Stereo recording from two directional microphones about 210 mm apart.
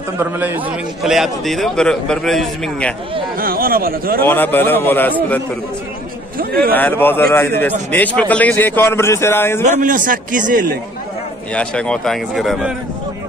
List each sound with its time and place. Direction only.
0.2 s a man's voice: 10° right (ahead or behind)
3.3 s speech: 45° right (ahead or behind)
4.2 s a man's voice: 10° left (ahead or behind)
6.3 s speech: 45° right (ahead or behind)
6.7 s a man's voice: 10° left (ahead or behind)
9.7 s a man's voice: 40° right (ahead or behind)
11.5 s a man's voice: 5° left (ahead or behind)